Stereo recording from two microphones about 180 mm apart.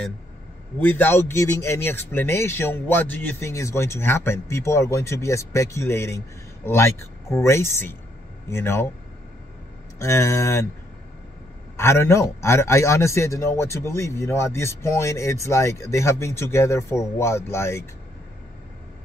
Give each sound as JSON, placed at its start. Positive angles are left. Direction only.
{"t": 0.7, "sound": "a man's voice", "side_deg": 10}
{"t": 9.9, "sound": "a man's voice", "side_deg": 15}
{"t": 11.7, "sound": "a man's voice", "side_deg": 15}